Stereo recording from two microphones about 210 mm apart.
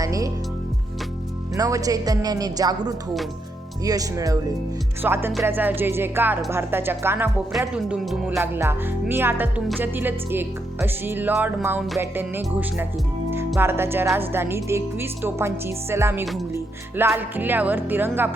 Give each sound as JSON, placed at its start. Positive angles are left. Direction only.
{"t": 0.0, "sound": "speech", "side_deg": -15}
{"t": 1.5, "sound": "speech", "side_deg": -15}
{"t": 13.6, "sound": "speech", "side_deg": -10}